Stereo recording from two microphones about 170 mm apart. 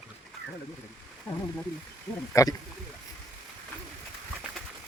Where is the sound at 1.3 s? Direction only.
20° left (ahead or behind).